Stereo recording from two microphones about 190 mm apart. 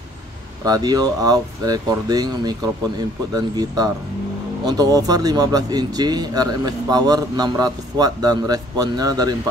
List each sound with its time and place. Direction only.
0.7 s speech: 20° right (ahead or behind)